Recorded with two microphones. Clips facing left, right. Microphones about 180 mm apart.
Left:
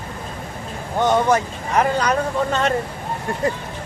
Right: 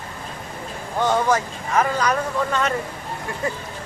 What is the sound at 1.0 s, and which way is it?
Speech, 20° left (ahead or behind).